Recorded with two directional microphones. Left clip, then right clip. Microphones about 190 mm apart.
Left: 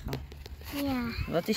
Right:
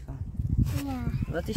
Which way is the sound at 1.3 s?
10° left (ahead or behind).